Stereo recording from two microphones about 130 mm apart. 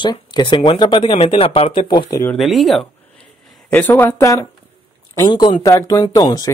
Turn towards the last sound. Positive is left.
turn(degrees=25)  # may be behind; listen again after turning